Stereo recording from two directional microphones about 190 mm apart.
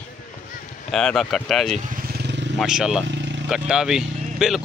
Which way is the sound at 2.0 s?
60° right (ahead or behind).